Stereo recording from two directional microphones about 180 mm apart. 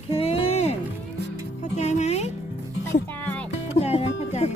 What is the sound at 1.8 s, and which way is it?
Music, 40° left (ahead or behind).